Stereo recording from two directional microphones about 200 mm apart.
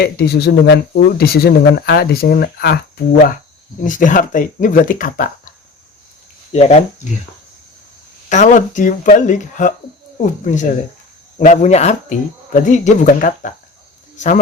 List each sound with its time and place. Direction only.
0.0 s speech: 55° left (ahead or behind)
6.5 s speech: 35° left (ahead or behind)
8.3 s speech: 40° left (ahead or behind)